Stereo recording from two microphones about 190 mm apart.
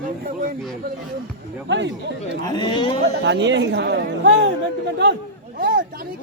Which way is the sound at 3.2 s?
65° right (ahead or behind).